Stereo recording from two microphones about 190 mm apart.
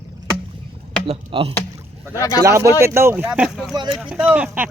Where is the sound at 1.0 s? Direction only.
30° right (ahead or behind).